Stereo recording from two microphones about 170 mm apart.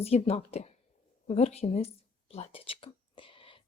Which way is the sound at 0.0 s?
40° left (ahead or behind).